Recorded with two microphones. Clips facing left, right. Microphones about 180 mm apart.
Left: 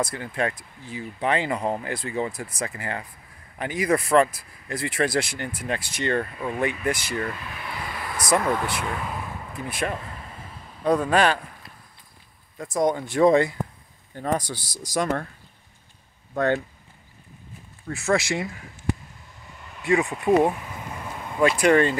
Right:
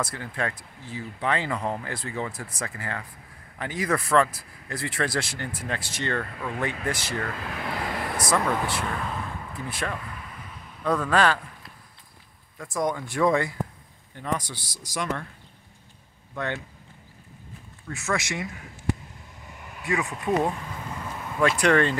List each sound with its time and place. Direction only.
0.0 s speech: 15° left (ahead or behind)
7.3 s speech: 90° right
7.8 s a sound: 50° right (ahead or behind)
8.3 s speech: 15° left (ahead or behind)
12.6 s speech: 20° left (ahead or behind)
14.1 s speech: 40° left (ahead or behind)
16.3 s speech: 40° left (ahead or behind)
17.8 s speech: 30° left (ahead or behind)
19.8 s speech: 25° left (ahead or behind)
21.4 s speech: 10° left (ahead or behind)